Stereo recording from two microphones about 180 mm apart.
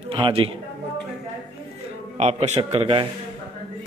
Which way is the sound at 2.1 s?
40° right (ahead or behind).